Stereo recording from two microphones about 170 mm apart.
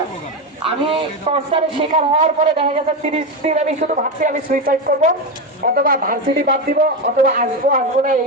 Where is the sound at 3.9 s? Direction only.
50° right (ahead or behind).